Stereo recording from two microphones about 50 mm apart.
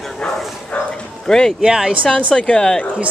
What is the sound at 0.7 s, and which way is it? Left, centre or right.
Speech, left.